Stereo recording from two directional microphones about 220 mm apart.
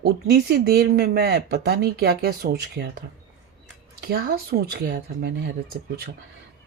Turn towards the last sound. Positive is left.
turn(degrees=-45)  # may be behind; listen again after turning